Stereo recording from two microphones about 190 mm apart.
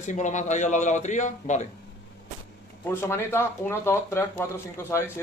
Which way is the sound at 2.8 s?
15° left (ahead or behind).